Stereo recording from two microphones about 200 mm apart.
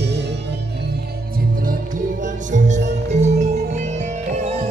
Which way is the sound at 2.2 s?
35° right (ahead or behind).